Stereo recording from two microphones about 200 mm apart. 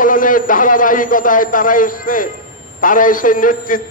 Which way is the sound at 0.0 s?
40° left (ahead or behind).